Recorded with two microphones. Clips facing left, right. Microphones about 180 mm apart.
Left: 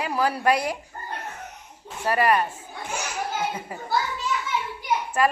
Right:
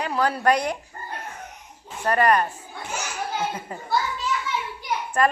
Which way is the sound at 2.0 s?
5° left (ahead or behind).